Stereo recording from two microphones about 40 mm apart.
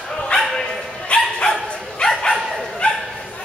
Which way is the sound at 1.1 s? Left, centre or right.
Left.